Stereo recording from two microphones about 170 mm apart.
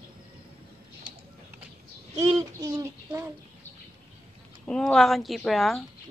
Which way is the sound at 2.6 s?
20° right (ahead or behind).